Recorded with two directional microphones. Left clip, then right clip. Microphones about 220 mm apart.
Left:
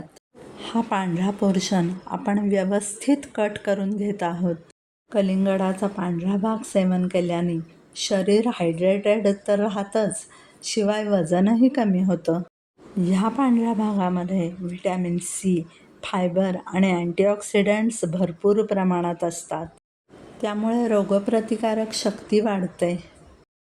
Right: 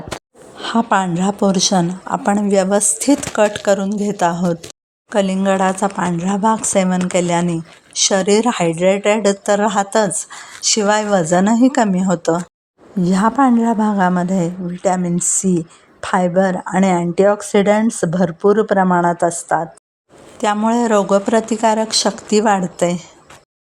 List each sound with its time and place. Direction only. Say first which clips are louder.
0.5 s a woman's voice: right 9 dB; 25° right (ahead or behind)